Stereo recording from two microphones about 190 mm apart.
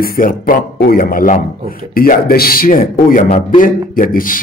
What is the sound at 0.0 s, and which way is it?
A man's voice, 50° left (ahead or behind).